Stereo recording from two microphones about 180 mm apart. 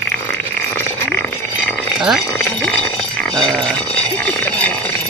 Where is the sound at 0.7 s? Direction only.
5° left (ahead or behind).